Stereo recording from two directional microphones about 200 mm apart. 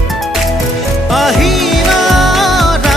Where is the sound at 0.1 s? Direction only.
Centre (ahead or behind).